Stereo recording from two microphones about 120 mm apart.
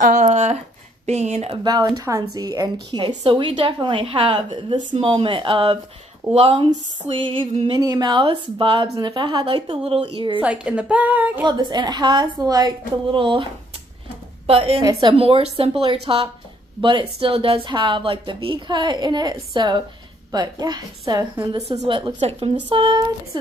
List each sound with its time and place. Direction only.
0.0 s a sound: 80° right
1.0 s speech: 70° right (ahead or behind)
1.5 s a woman's voice: 35° right (ahead or behind)
7.8 s a woman's voice: 35° right (ahead or behind)
10.4 s a woman's voice: 10° right (ahead or behind)
11.4 s a woman's voice: 40° right (ahead or behind)
13.1 s a woman's voice: 45° right (ahead or behind)
14.8 s a woman's voice: 35° right (ahead or behind)